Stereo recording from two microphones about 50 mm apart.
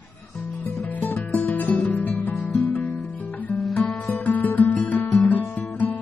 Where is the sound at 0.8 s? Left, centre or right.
Left.